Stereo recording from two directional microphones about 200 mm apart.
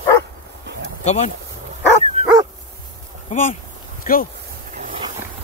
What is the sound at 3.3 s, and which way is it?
Speech, 40° left (ahead or behind).